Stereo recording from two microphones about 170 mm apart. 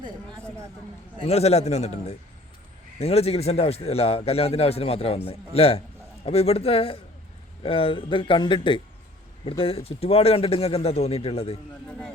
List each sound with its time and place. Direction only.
1.2 s a man's voice: 35° left (ahead or behind)
11.9 s speech: 5° left (ahead or behind)